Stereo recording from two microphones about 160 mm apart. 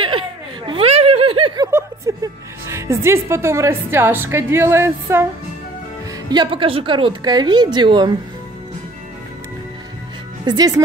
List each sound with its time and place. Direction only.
0.7 s a sound: 35° right (ahead or behind)
1.7 s chuckle: 15° right (ahead or behind)
2.7 s a woman's voice: 15° right (ahead or behind)
6.3 s a woman's voice: 30° right (ahead or behind)
10.4 s a woman's voice: 25° right (ahead or behind)